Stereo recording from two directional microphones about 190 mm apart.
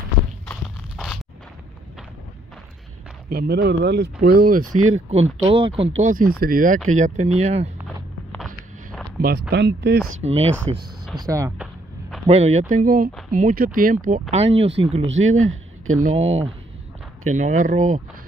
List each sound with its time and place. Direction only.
0.9 s a sound: centre (ahead or behind)
3.3 s speech: 55° right (ahead or behind)
5.1 s speech: 30° right (ahead or behind)
6.0 s speech: 45° right (ahead or behind)
9.2 s speech: 60° right (ahead or behind)
10.2 s speech: 30° right (ahead or behind)
11.1 s speech: 15° right (ahead or behind)
11.5 s a sound: 5° right (ahead or behind)
12.3 s speech: 35° right (ahead or behind)
14.3 s speech: 30° right (ahead or behind)
15.0 s speech: 90° right
17.3 s speech: 40° right (ahead or behind)